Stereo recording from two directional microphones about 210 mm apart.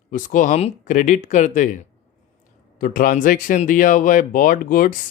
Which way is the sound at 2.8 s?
40° left (ahead or behind).